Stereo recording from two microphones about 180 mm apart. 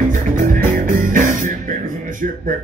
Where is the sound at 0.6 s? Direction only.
45° right (ahead or behind).